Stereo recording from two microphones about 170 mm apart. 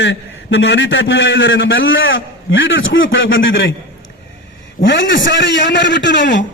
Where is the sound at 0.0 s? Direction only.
90° left.